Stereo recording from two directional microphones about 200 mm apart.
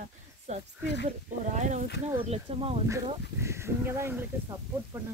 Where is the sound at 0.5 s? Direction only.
35° right (ahead or behind).